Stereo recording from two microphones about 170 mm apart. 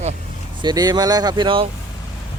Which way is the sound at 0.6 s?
25° right (ahead or behind).